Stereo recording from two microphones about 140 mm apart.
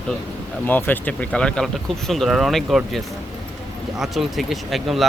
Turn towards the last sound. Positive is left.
turn(degrees=0)  # may be behind; listen again after turning